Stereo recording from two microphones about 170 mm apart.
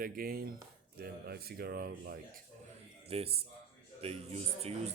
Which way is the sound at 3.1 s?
35° right (ahead or behind).